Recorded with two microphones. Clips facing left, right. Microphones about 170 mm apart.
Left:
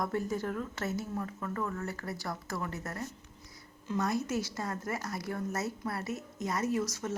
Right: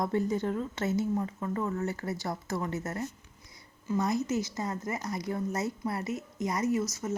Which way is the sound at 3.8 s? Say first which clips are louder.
Right 3 dB; 10° right (ahead or behind).